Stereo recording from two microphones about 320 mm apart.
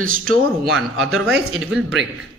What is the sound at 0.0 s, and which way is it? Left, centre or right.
Speech, right.